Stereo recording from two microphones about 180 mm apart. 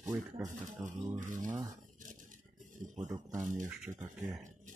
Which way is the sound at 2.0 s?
45° right (ahead or behind).